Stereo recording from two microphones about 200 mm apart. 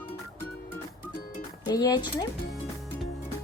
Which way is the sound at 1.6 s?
20° left (ahead or behind).